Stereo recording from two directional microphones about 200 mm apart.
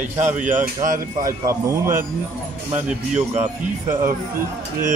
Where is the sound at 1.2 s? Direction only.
15° right (ahead or behind).